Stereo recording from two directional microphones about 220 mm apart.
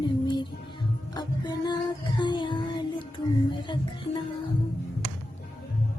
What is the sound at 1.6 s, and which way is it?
Music, 20° left (ahead or behind).